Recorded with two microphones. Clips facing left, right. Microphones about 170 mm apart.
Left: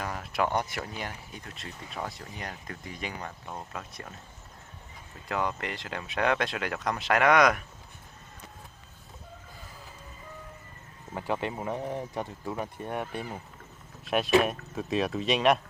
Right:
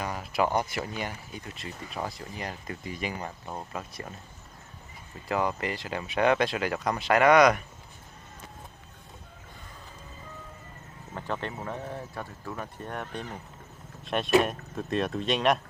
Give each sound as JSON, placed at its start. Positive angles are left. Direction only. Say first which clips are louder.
{"t": 0.0, "sound": "speech", "louder": "right 2 dB", "side_deg": 0}
{"t": 5.3, "sound": "speech", "louder": "right 3 dB", "side_deg": -5}
{"t": 11.1, "sound": "speech", "louder": "left 3 dB", "side_deg": 10}